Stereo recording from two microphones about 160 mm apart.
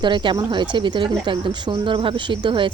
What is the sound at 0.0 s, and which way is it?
Speech, 30° right (ahead or behind).